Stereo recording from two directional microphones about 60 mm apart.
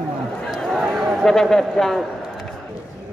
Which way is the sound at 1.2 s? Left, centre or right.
Centre.